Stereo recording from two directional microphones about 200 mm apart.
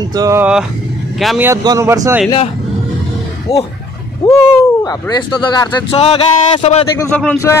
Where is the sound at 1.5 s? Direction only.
15° right (ahead or behind).